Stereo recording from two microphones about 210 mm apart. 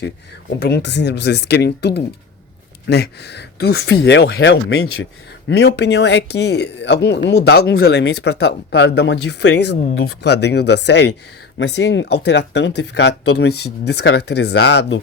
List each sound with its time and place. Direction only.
0.6 s speech: 55° left (ahead or behind)